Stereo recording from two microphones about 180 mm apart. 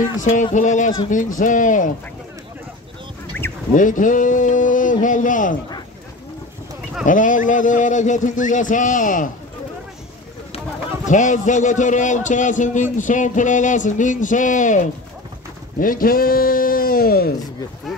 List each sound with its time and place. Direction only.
0.2 s a man's voice: 45° left (ahead or behind)
3.7 s a man's voice: 45° left (ahead or behind)
7.1 s a man's voice: 45° left (ahead or behind)
11.1 s a man's voice: 45° left (ahead or behind)